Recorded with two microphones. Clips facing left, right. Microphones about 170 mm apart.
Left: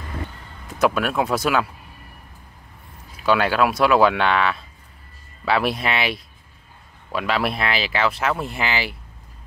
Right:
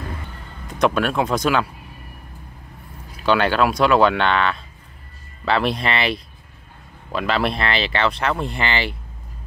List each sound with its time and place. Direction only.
0.7 s speech: 5° left (ahead or behind)
3.3 s speech: 5° left (ahead or behind)